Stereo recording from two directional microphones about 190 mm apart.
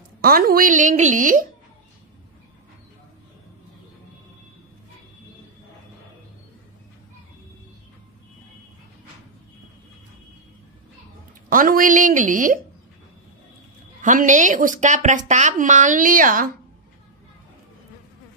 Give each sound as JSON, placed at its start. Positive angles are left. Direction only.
{"t": 0.2, "sound": "a woman's voice", "side_deg": -50}
{"t": 11.4, "sound": "a woman's voice", "side_deg": -45}
{"t": 14.0, "sound": "a woman's voice", "side_deg": -40}